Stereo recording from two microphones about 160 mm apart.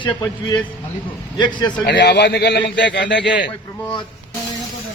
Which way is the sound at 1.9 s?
90° left.